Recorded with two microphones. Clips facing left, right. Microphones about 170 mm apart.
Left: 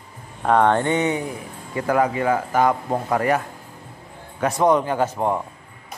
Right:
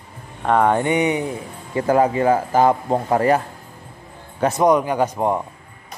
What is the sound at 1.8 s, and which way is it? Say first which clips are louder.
A man's voice: right 3 dB; 30° right (ahead or behind).